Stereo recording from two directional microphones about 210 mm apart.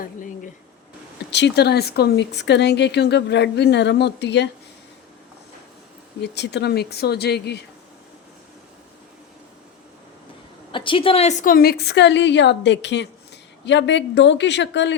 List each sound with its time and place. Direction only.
0.0 s a sound: 40° left (ahead or behind)
1.3 s speech: 55° left (ahead or behind)
6.2 s speech: 55° left (ahead or behind)
10.7 s a woman's voice: 25° left (ahead or behind); by 14.9 s 55° left (ahead or behind)